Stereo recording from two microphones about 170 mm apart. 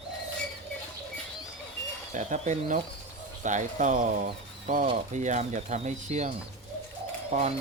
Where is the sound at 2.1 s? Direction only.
45° right (ahead or behind).